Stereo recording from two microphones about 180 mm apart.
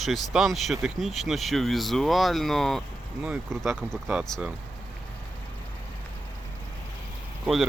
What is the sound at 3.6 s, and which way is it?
Speech, 5° left (ahead or behind).